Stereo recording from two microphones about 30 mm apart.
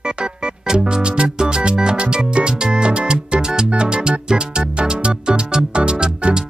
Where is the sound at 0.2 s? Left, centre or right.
Right.